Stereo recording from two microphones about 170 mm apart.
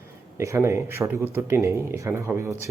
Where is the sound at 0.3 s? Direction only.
15° right (ahead or behind).